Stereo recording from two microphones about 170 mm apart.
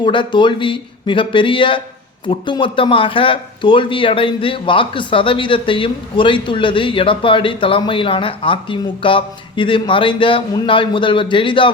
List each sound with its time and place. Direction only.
0.0 s speech: 30° left (ahead or behind)